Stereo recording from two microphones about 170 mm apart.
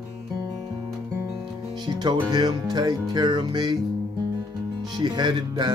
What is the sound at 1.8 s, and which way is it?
Music, 25° right (ahead or behind).